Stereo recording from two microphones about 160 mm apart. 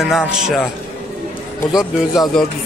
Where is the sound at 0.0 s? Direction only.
Centre (ahead or behind).